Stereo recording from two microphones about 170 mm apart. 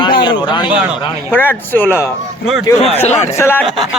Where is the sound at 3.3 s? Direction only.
15° left (ahead or behind).